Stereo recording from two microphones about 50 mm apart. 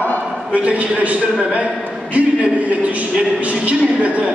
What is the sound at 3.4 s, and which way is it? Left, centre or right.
Speech, right.